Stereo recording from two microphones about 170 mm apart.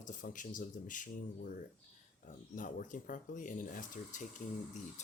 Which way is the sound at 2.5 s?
55° left (ahead or behind).